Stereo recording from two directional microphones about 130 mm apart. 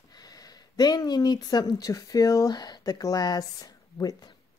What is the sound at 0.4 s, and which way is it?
Speech, 30° left (ahead or behind).